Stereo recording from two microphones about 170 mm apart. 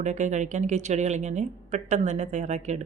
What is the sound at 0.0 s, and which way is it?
A woman's voice, 45° right (ahead or behind).